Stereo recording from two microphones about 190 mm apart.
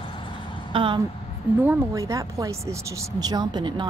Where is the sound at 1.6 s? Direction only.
15° right (ahead or behind).